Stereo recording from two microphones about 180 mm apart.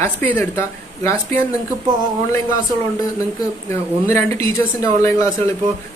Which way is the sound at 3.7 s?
15° left (ahead or behind).